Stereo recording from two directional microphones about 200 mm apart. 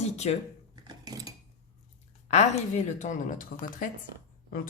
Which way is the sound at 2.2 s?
35° left (ahead or behind).